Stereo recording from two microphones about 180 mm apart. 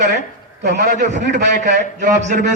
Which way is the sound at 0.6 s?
40° right (ahead or behind).